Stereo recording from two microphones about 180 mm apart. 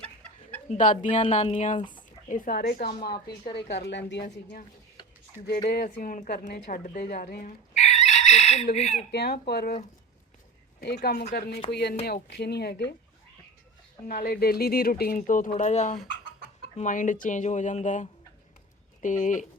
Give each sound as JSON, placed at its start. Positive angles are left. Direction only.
{"t": 0.7, "sound": "a woman's voice", "side_deg": 45}
{"t": 1.8, "sound": "a sound", "side_deg": 25}
{"t": 2.3, "sound": "a woman's voice", "side_deg": 50}
{"t": 3.4, "sound": "a woman's voice", "side_deg": 30}
{"t": 3.8, "sound": "speech", "side_deg": 75}
{"t": 5.6, "sound": "a woman's voice", "side_deg": 60}
{"t": 7.7, "sound": "chicken", "side_deg": 40}
{"t": 9.1, "sound": "speech", "side_deg": 65}
{"t": 10.8, "sound": "speech", "side_deg": 65}
{"t": 14.1, "sound": "a woman's voice", "side_deg": 55}